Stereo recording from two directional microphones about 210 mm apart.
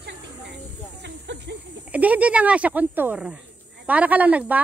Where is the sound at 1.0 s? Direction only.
55° right (ahead or behind).